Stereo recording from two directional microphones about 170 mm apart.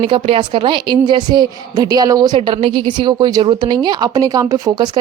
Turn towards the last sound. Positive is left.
turn(degrees=-15)  # may be behind; listen again after turning